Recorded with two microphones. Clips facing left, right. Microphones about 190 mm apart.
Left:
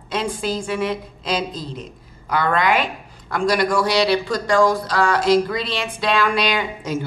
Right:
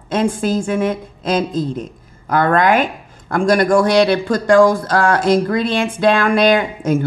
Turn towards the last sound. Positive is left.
turn(degrees=-50)  # may be behind; listen again after turning